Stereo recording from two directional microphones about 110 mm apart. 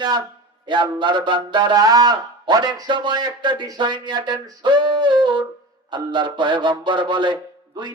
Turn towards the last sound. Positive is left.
turn(degrees=-45)  # may be behind; listen again after turning